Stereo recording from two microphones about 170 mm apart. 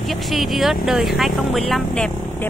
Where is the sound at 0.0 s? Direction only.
Centre (ahead or behind).